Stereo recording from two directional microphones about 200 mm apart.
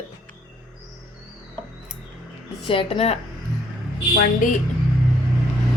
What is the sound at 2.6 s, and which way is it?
Speech, 25° left (ahead or behind).